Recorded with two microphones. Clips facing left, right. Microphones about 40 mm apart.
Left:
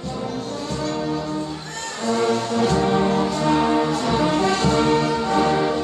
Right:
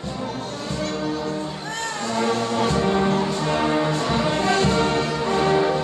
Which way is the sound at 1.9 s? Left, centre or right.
Centre.